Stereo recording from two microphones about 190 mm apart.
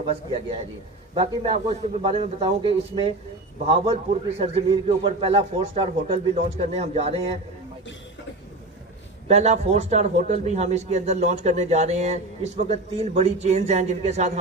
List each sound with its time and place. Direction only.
0.1 s a man's voice: 35° right (ahead or behind)
9.3 s a man's voice: 35° right (ahead or behind)